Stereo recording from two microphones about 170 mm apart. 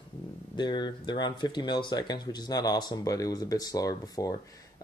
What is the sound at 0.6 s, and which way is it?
Speech, 25° left (ahead or behind).